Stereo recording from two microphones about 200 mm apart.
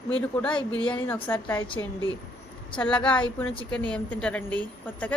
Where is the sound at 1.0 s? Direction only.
10° left (ahead or behind).